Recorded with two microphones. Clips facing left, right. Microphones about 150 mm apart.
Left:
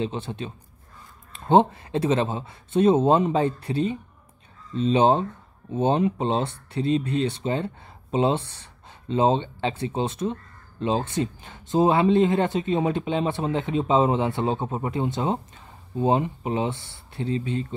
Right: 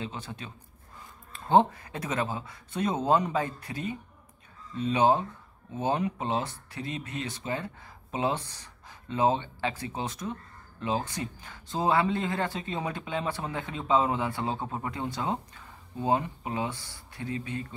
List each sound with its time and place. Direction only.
0.0 s speech: 25° left (ahead or behind)